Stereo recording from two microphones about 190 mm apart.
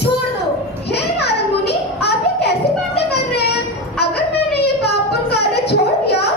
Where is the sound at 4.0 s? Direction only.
60° left (ahead or behind).